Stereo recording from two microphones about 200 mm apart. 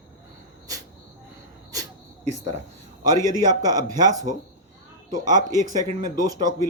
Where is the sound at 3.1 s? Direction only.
20° right (ahead or behind).